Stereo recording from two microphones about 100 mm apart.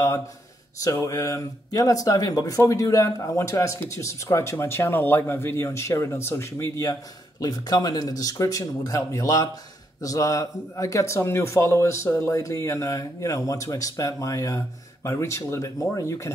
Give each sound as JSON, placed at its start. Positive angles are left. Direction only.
{"t": 0.7, "sound": "speech", "side_deg": 35}